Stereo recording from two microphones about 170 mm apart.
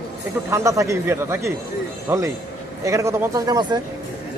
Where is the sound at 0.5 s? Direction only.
20° right (ahead or behind).